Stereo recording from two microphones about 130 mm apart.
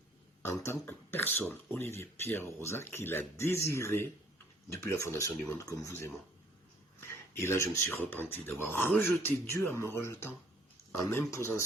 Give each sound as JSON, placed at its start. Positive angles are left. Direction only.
{"t": 0.4, "sound": "speech", "side_deg": 20}